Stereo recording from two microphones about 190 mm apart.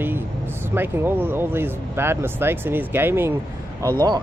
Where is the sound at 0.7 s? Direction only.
10° right (ahead or behind).